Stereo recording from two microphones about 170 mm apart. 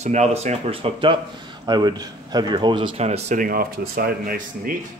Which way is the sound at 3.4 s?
60° right (ahead or behind).